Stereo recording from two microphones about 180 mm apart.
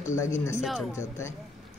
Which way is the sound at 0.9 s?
15° left (ahead or behind).